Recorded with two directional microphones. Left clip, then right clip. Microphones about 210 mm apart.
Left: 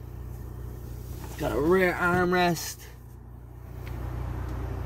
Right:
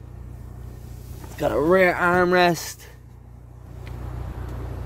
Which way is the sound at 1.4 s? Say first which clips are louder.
Right 6 dB; 40° right (ahead or behind).